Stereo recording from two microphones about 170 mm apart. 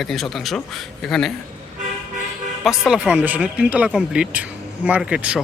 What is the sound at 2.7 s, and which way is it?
Speech, 5° right (ahead or behind).